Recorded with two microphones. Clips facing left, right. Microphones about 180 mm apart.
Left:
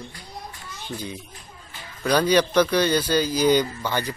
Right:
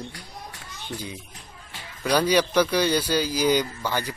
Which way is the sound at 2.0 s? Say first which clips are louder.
Left 2 dB; 10° right (ahead or behind).